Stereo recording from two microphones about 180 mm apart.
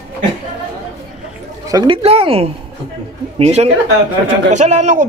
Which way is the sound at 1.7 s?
25° right (ahead or behind).